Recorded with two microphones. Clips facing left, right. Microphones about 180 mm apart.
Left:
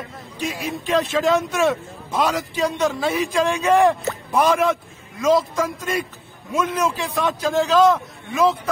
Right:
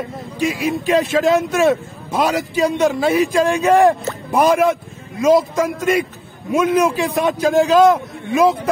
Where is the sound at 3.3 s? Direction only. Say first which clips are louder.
Right 4 dB; 50° right (ahead or behind).